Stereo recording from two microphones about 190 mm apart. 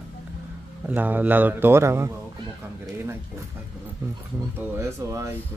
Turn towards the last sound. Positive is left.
turn(degrees=-15)  # may be behind; listen again after turning